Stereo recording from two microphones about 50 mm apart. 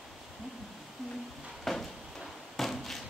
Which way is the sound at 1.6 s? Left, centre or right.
Centre.